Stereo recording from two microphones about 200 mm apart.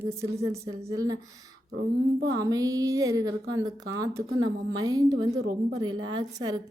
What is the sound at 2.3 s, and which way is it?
A woman's voice, 15° right (ahead or behind).